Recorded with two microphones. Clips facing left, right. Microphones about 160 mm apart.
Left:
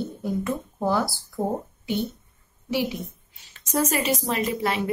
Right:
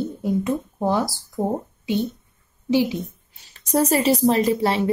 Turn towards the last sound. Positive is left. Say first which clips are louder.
# right 6 dB
turn(degrees=-30)  # may be behind; listen again after turning